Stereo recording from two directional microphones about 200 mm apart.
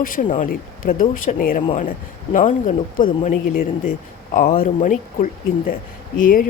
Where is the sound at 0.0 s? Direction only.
45° left (ahead or behind).